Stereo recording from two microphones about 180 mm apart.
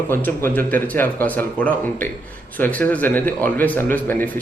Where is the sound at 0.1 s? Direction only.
10° left (ahead or behind).